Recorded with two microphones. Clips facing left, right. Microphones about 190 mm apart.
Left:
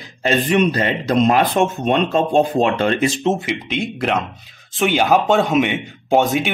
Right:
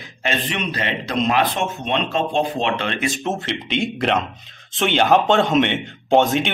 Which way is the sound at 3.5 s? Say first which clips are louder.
Even; 5° left (ahead or behind).